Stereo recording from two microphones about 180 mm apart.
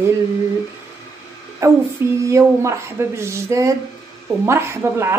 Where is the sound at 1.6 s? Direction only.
15° right (ahead or behind).